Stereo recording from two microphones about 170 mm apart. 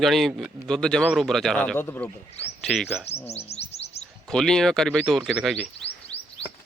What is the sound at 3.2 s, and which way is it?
Chirp, 40° left (ahead or behind).